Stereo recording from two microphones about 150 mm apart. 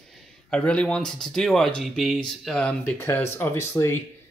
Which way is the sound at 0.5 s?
5° left (ahead or behind).